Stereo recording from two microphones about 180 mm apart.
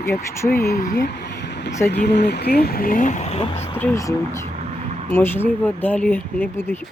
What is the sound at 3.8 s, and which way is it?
Speech, 15° left (ahead or behind).